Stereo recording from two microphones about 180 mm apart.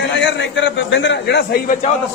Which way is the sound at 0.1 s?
85° left.